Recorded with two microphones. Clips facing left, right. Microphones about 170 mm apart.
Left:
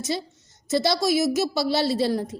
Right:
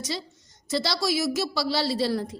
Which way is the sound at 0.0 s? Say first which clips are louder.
Left 5 dB; 20° left (ahead or behind).